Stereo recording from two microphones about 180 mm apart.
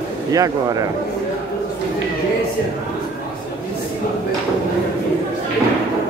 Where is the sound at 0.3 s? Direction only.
20° right (ahead or behind).